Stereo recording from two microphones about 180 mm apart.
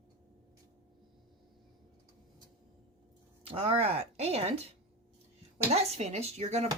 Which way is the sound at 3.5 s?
30° right (ahead or behind).